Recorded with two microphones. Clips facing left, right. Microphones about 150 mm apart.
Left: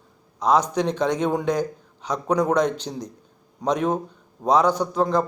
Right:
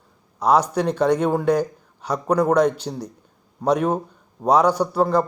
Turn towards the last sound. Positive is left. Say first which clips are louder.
# right 2 dB
turn(degrees=-10)  # may be behind; listen again after turning